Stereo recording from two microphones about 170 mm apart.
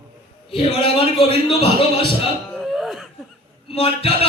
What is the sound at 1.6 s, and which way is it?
Speech, 75° right (ahead or behind).